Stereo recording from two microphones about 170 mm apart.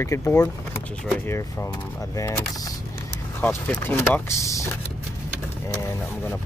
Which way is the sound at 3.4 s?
10° left (ahead or behind).